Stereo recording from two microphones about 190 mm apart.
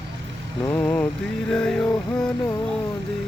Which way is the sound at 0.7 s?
15° left (ahead or behind).